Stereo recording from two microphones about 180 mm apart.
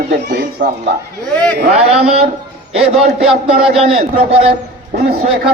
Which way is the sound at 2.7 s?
35° right (ahead or behind).